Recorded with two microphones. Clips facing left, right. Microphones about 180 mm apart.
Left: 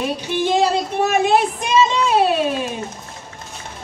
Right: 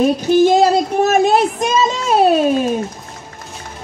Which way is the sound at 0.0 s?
45° right (ahead or behind).